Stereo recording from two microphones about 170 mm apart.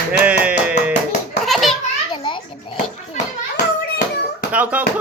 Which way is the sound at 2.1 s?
30° left (ahead or behind).